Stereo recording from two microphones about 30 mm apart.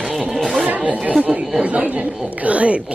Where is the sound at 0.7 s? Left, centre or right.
Right.